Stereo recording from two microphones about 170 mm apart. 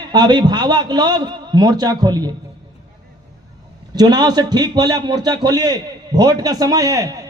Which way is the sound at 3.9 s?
25° right (ahead or behind).